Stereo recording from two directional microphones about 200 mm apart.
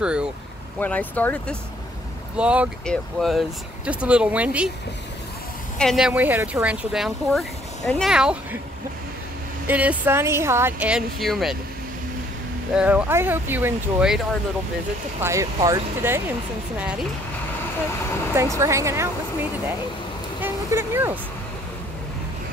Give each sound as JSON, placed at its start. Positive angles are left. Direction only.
{"t": 0.0, "sound": "speech", "side_deg": -5}
{"t": 0.7, "sound": "speech", "side_deg": 5}
{"t": 2.3, "sound": "speech", "side_deg": -5}
{"t": 5.8, "sound": "speech", "side_deg": 0}
{"t": 9.7, "sound": "a woman's voice", "side_deg": -10}
{"t": 12.7, "sound": "a woman's voice", "side_deg": -5}
{"t": 18.3, "sound": "a woman's voice", "side_deg": -15}
{"t": 20.3, "sound": "vehicle", "side_deg": -10}